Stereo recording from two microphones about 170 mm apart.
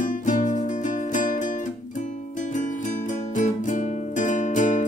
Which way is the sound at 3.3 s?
45° left (ahead or behind).